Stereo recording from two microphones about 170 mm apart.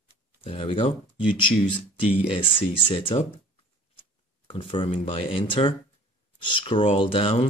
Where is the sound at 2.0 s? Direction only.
30° left (ahead or behind).